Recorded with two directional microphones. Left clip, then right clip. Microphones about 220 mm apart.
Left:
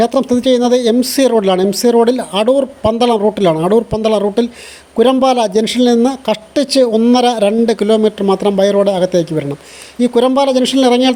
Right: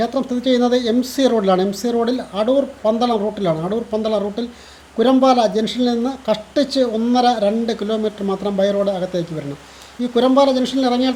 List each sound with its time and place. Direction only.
0.0 s speech: 35° left (ahead or behind)